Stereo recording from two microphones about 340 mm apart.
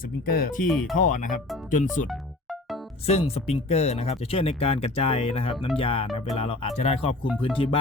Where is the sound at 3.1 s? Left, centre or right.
Centre.